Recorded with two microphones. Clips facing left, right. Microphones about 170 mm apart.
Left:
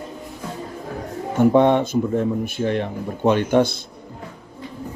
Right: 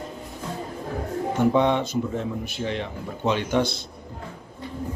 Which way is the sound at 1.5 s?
50° left (ahead or behind).